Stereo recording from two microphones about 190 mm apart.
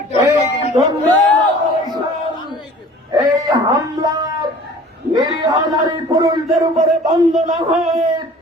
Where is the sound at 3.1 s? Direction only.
15° right (ahead or behind).